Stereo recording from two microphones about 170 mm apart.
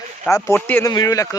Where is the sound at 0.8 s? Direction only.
20° left (ahead or behind).